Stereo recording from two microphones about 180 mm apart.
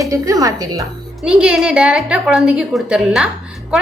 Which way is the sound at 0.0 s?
20° right (ahead or behind).